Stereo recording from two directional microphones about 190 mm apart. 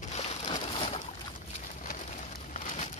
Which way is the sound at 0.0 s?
35° left (ahead or behind).